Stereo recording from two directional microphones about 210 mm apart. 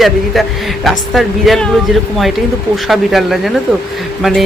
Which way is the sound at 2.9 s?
Centre (ahead or behind).